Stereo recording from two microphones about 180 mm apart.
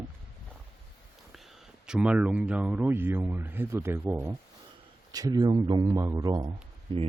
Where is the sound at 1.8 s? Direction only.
5° right (ahead or behind); by 6.5 s 20° right (ahead or behind).